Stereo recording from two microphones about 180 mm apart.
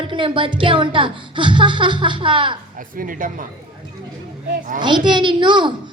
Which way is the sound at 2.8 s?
50° right (ahead or behind).